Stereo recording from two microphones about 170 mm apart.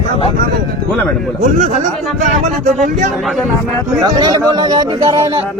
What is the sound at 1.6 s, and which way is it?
Speech, 45° right (ahead or behind).